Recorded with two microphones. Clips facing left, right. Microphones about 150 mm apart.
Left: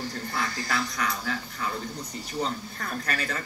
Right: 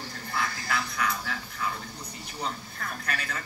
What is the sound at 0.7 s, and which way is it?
Speech, 35° left (ahead or behind).